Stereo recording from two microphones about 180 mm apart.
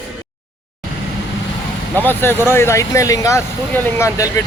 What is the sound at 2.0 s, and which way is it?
Speech, 10° left (ahead or behind).